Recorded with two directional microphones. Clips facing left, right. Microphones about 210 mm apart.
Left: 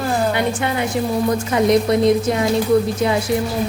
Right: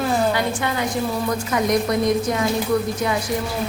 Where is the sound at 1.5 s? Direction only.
25° left (ahead or behind).